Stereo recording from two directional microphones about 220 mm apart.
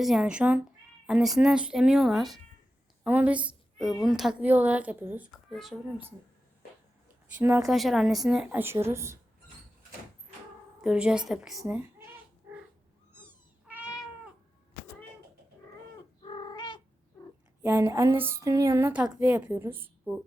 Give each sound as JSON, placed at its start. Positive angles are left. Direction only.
{"t": 0.0, "sound": "a woman's voice", "side_deg": 0}
{"t": 7.3, "sound": "a woman's voice", "side_deg": -10}
{"t": 10.8, "sound": "a woman's voice", "side_deg": -5}
{"t": 11.6, "sound": "speech", "side_deg": -10}
{"t": 13.1, "sound": "cat", "side_deg": -10}
{"t": 16.2, "sound": "bird", "side_deg": 20}
{"t": 17.6, "sound": "a woman's voice", "side_deg": -10}